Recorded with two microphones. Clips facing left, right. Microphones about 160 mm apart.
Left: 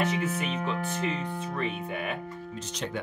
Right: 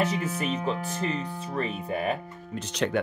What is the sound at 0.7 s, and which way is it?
Speech, 35° right (ahead or behind).